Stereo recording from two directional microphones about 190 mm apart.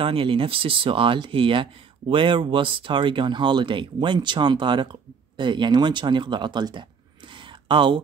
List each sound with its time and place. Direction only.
0.0 s speech: 30° right (ahead or behind)